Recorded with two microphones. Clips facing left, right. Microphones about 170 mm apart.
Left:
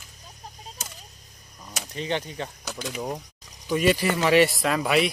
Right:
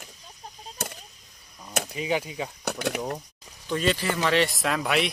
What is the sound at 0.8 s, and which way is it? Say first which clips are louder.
Arrow: right 9 dB; 60° right (ahead or behind).